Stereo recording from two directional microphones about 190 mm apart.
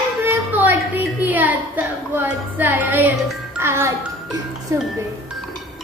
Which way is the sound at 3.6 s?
15° right (ahead or behind).